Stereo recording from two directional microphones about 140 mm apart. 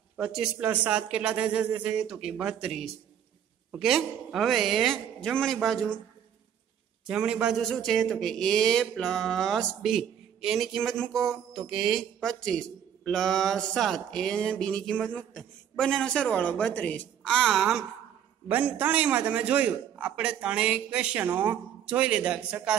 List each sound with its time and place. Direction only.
0.2 s a man's voice: 5° right (ahead or behind)
7.1 s a woman's voice: 5° right (ahead or behind)